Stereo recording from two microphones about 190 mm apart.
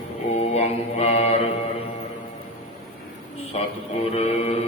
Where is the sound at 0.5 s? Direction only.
35° left (ahead or behind).